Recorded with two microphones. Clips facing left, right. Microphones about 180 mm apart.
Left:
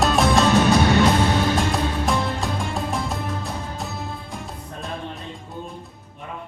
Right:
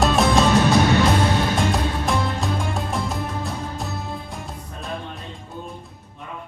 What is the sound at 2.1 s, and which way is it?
Music, centre (ahead or behind).